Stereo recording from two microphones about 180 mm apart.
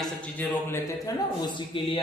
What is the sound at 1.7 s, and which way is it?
Speech, 30° left (ahead or behind).